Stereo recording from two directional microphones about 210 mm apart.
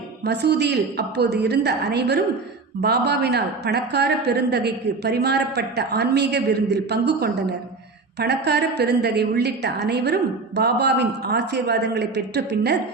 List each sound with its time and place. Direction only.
0.3 s a woman's voice: 50° right (ahead or behind)